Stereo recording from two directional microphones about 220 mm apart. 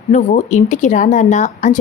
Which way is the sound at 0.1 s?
35° left (ahead or behind).